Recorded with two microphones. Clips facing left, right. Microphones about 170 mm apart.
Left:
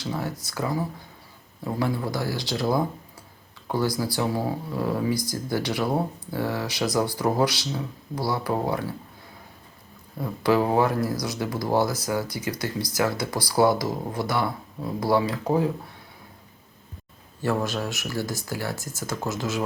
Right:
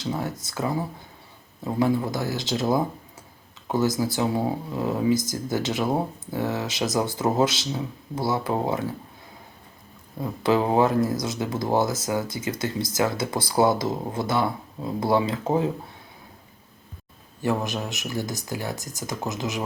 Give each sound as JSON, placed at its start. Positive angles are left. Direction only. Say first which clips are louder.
{"t": 0.0, "sound": "speech", "louder": "right 1 dB", "side_deg": -25}
{"t": 10.2, "sound": "speech", "louder": "even", "side_deg": -20}
{"t": 17.4, "sound": "speech", "louder": "even", "side_deg": -20}